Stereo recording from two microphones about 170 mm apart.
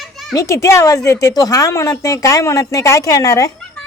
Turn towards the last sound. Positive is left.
turn(degrees=20)  # may be behind; listen again after turning